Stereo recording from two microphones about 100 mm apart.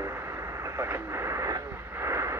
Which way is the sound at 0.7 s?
25° right (ahead or behind).